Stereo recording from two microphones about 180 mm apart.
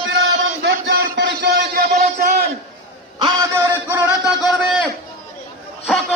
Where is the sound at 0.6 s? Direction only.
70° right (ahead or behind).